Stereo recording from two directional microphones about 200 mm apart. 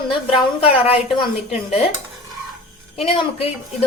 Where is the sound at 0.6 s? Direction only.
30° left (ahead or behind).